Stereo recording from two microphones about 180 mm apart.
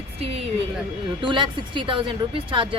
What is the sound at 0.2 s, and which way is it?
A woman's voice, 35° right (ahead or behind).